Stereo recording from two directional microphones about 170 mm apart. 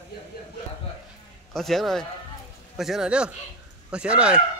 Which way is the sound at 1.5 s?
Centre (ahead or behind).